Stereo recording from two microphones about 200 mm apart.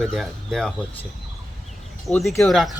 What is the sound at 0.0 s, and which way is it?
Speech, centre (ahead or behind).